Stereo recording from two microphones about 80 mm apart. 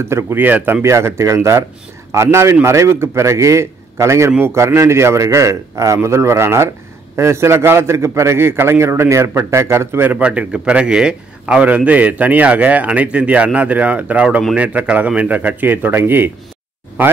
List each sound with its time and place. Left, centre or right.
0.0 s a man's voice: right
0.8 s a man's voice: right
10.0 s a man's voice: centre